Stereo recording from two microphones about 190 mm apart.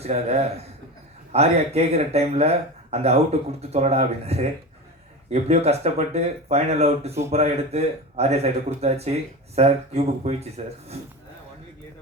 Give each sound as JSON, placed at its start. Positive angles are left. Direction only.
{"t": 0.0, "sound": "speech", "side_deg": -35}